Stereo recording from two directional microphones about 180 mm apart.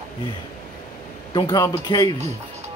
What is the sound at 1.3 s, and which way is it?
Speech, 25° left (ahead or behind).